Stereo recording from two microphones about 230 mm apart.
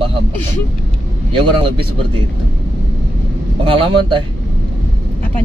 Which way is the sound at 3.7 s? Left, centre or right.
Right.